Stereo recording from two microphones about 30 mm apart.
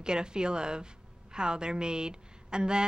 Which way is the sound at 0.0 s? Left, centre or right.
Right.